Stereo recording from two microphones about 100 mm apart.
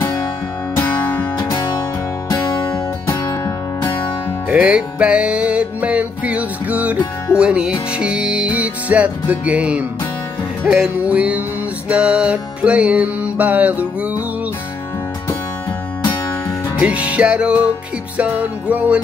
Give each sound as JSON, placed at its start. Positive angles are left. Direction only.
{"t": 0.7, "sound": "music", "side_deg": 20}
{"t": 2.2, "sound": "music", "side_deg": 35}
{"t": 4.5, "sound": "music", "side_deg": -10}
{"t": 16.8, "sound": "music", "side_deg": -10}